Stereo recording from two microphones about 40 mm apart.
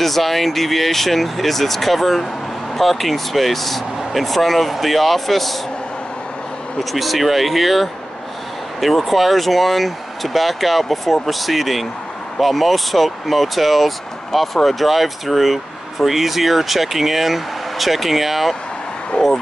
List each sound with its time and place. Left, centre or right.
0.0 s speech: centre
6.8 s speech: centre
19.1 s a sound: left